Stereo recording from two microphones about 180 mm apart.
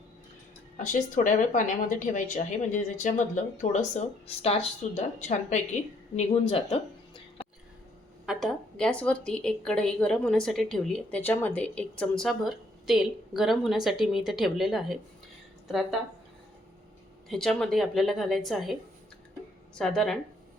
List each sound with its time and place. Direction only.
0.8 s a woman's voice: 45° left (ahead or behind)
8.3 s a woman's voice: centre (ahead or behind)
17.2 s a woman's voice: centre (ahead or behind)